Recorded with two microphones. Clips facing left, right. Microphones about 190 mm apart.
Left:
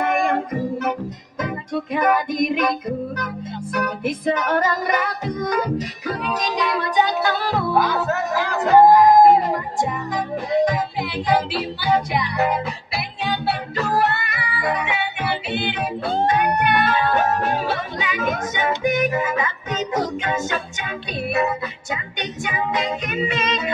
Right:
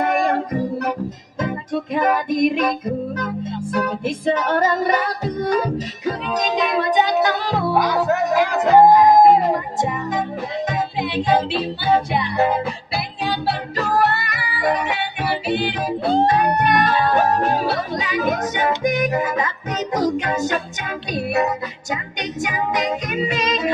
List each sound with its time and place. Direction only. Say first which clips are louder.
0.0 s music: right 1 dB; 35° right (ahead or behind)
22.4 s music: right 2 dB; 40° right (ahead or behind)